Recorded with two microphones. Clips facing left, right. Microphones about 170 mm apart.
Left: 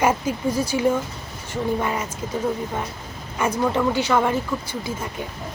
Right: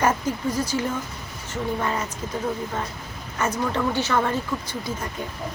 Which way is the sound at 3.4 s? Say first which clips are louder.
Left 3 dB; 10° left (ahead or behind).